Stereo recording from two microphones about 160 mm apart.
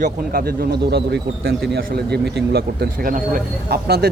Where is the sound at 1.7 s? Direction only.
80° right.